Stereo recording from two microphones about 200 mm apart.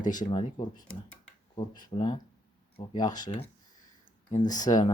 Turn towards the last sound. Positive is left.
turn(degrees=20)  # may be behind; listen again after turning